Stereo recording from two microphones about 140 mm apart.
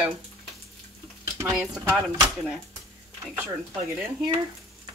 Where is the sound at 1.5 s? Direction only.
5° right (ahead or behind).